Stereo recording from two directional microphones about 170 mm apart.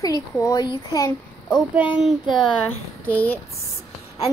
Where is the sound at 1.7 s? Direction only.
10° right (ahead or behind).